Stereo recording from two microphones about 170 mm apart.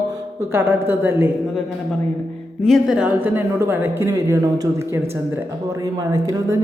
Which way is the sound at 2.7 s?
5° right (ahead or behind).